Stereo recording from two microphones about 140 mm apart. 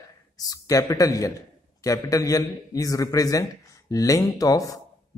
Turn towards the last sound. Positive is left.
turn(degrees=25)  # may be behind; listen again after turning